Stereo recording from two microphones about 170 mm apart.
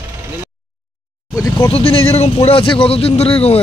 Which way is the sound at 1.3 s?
20° left (ahead or behind).